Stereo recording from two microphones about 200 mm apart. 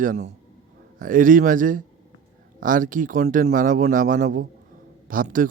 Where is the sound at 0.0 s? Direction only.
40° right (ahead or behind).